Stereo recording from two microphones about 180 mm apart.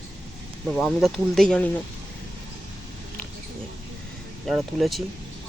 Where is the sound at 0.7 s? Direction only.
Centre (ahead or behind).